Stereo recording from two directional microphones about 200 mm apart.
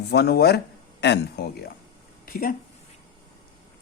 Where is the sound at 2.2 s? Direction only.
45° left (ahead or behind).